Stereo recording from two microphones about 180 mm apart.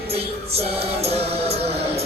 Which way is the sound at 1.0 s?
35° right (ahead or behind).